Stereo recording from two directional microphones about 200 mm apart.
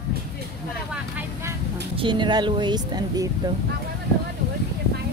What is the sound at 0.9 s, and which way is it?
Vehicle, 10° right (ahead or behind).